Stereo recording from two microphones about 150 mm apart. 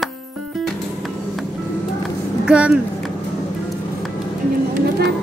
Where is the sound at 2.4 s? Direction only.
5° right (ahead or behind).